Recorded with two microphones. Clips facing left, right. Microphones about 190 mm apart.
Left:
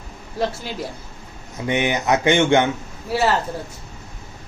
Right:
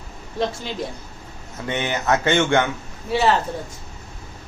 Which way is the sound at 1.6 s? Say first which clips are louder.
Left 3 dB; 15° left (ahead or behind).